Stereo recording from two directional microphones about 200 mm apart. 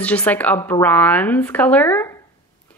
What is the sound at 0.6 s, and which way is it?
Speech, 20° left (ahead or behind).